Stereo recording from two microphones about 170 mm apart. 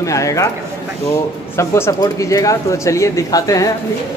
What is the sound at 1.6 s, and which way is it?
Speech, 15° left (ahead or behind).